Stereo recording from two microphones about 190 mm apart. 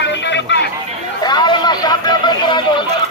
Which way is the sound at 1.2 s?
20° left (ahead or behind).